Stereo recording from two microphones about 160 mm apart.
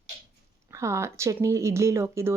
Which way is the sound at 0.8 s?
15° right (ahead or behind).